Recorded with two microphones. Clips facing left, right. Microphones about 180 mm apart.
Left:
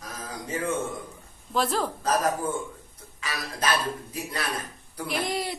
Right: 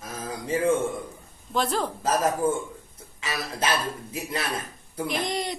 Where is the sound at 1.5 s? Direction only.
5° left (ahead or behind).